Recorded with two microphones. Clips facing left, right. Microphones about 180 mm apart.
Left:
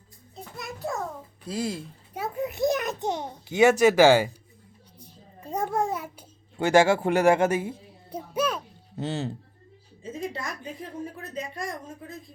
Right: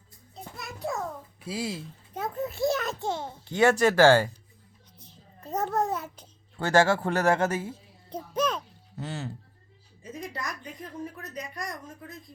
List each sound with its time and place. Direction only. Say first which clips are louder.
0.5 s a sound: left 1 dB; centre (ahead or behind)
1.5 s speech: left 3 dB; 5° right (ahead or behind)
2.1 s a child's voice: left 1 dB; 10° left (ahead or behind)
4.9 s babbling: left 4 dB; 10° left (ahead or behind)
9.0 s speech: left 6 dB; 20° left (ahead or behind)
10.0 s music: left 4 dB; 25° left (ahead or behind)
11.2 s speech: left 3 dB; 30° left (ahead or behind)